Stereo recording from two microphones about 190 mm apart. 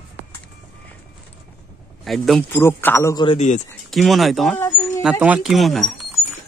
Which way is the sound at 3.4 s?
40° left (ahead or behind).